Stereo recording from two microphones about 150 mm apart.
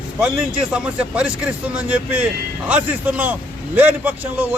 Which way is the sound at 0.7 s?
5° right (ahead or behind).